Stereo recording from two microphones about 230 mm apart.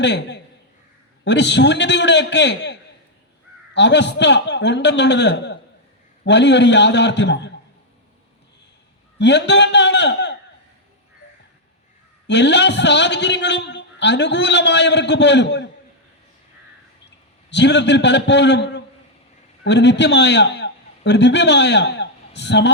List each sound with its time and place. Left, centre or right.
0.0 s a man's voice: left
3.8 s a man's voice: left
9.1 s a man's voice: left
12.3 s a man's voice: left
17.5 s a man's voice: left